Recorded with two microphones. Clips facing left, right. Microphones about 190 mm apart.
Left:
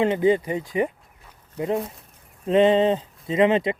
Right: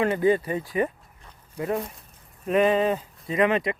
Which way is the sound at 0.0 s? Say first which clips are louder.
Left 2 dB; 20° left (ahead or behind).